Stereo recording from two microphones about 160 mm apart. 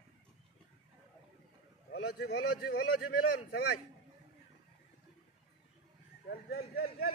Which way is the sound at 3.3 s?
90° left.